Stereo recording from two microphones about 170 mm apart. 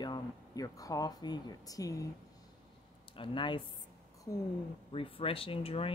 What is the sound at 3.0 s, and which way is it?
Speech, 30° left (ahead or behind).